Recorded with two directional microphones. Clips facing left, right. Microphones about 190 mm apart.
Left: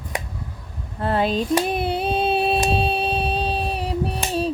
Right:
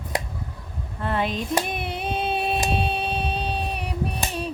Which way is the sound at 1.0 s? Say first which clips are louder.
Left 5 dB; 35° left (ahead or behind).